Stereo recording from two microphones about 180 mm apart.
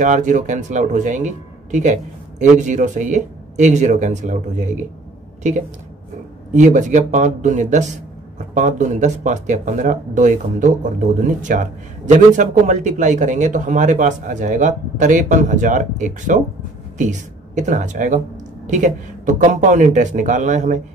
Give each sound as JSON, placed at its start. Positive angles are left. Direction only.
{"t": 0.0, "sound": "speech", "side_deg": -45}
{"t": 6.5, "sound": "speech", "side_deg": -45}